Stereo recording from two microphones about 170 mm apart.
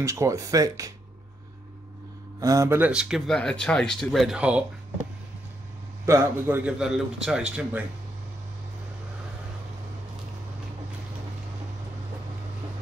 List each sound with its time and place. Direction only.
0.0 s speech: 15° right (ahead or behind)
2.4 s speech: 20° right (ahead or behind)
6.0 s a man's voice: 15° right (ahead or behind)